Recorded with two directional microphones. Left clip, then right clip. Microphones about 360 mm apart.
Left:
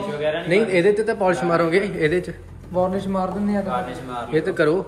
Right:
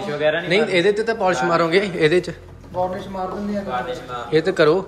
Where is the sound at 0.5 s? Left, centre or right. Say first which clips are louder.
Left 3 dB; centre.